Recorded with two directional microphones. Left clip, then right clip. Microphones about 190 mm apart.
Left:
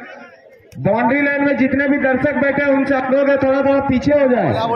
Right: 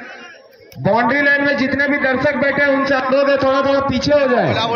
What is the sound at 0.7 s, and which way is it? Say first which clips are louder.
A man's voice: right 1 dB; 55° left (ahead or behind).